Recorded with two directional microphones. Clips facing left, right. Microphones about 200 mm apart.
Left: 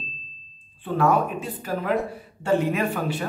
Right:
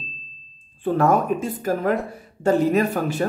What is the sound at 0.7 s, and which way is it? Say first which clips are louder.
Speech: right 3 dB; 45° right (ahead or behind).